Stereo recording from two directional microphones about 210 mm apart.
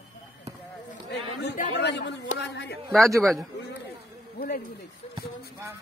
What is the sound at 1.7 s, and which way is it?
Speech, 55° left (ahead or behind).